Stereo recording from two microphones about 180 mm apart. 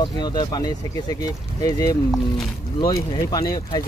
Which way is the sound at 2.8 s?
20° left (ahead or behind).